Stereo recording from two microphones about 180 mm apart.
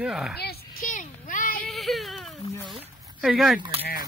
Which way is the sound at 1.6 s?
Centre (ahead or behind).